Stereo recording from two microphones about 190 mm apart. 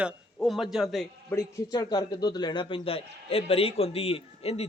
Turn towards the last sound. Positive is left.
turn(degrees=30)  # may be behind; listen again after turning